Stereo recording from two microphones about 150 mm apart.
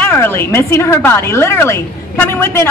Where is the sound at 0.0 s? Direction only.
15° left (ahead or behind).